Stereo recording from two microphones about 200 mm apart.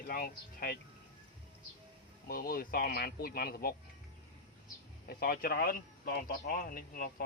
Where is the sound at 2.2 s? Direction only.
45° left (ahead or behind).